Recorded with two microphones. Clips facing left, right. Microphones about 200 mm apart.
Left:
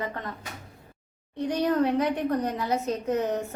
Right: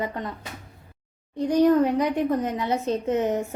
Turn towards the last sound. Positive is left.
turn(degrees=-20)  # may be behind; listen again after turning